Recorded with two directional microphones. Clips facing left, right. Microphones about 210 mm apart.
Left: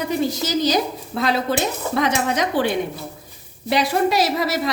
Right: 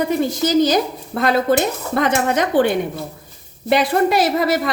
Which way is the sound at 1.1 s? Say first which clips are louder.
Right 5 dB; 55° right (ahead or behind).